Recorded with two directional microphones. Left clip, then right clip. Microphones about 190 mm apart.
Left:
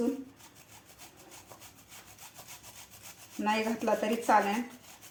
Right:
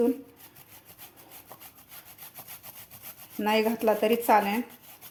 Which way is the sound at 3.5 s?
50° right (ahead or behind).